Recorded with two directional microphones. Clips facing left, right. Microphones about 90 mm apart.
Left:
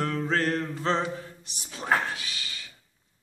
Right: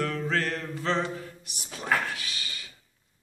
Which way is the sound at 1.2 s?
30° left (ahead or behind).